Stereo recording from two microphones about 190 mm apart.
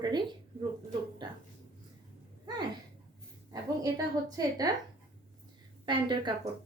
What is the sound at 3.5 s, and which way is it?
Speech, 20° right (ahead or behind).